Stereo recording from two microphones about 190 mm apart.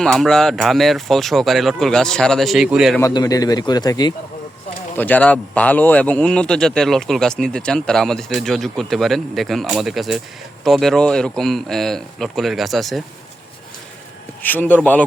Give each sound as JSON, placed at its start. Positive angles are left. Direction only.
{"t": 0.0, "sound": "speech", "side_deg": 0}
{"t": 3.0, "sound": "a man's voice", "side_deg": 20}
{"t": 4.9, "sound": "speech", "side_deg": 10}
{"t": 14.4, "sound": "speech", "side_deg": 10}